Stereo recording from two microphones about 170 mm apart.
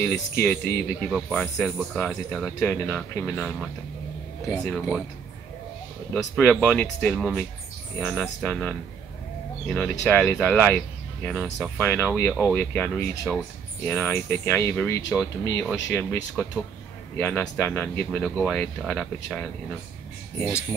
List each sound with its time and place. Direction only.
0.0 s speech: 10° left (ahead or behind)
6.1 s speech: 5° left (ahead or behind)